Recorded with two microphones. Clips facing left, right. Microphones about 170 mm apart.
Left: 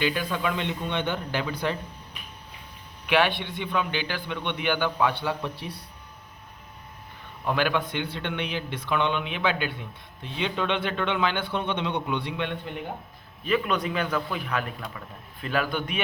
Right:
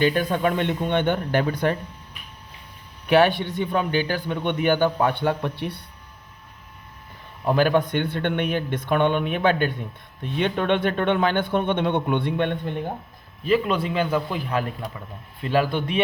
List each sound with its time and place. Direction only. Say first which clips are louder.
0.0 s a man's voice: right 6 dB; 50° right (ahead or behind)
3.1 s a man's voice: right 6 dB; 40° right (ahead or behind); by 5.8 s 60° right (ahead or behind)
7.4 s a man's voice: right 6 dB; 40° right (ahead or behind)
13.4 s a man's voice: right 4 dB; 30° right (ahead or behind)